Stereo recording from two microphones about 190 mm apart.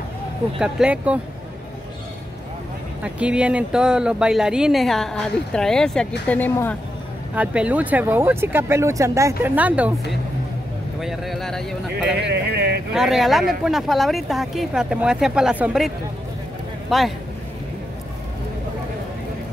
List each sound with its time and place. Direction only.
0.6 s speech: 5° right (ahead or behind)
3.0 s speech: 5° right (ahead or behind); by 6.8 s 10° left (ahead or behind)
7.3 s speech: 5° right (ahead or behind)
11.0 s speech: centre (ahead or behind)
12.2 s speech: 65° right (ahead or behind)
12.9 s speech: centre (ahead or behind)
16.9 s speech: centre (ahead or behind)